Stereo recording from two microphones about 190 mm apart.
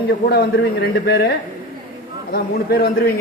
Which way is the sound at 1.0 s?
60° left (ahead or behind).